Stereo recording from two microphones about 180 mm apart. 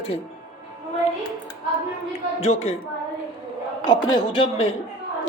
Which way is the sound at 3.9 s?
25° left (ahead or behind).